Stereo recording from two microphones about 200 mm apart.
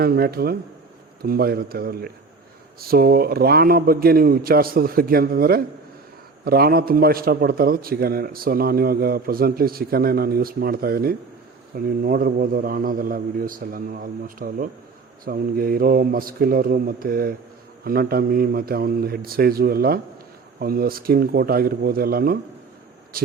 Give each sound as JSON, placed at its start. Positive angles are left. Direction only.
{"t": 0.0, "sound": "a man's voice", "side_deg": -50}